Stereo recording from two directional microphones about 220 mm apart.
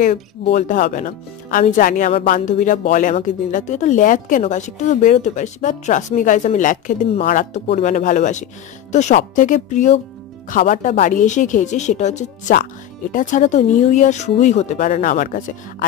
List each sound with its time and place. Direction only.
0.0 s speech: 35° left (ahead or behind)